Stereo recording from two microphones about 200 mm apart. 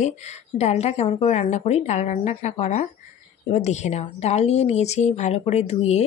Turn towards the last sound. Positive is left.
turn(degrees=35)  # may be behind; listen again after turning